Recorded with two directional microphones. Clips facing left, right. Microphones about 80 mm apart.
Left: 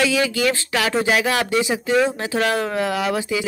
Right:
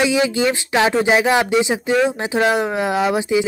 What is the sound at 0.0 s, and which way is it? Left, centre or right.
A woman's voice, right.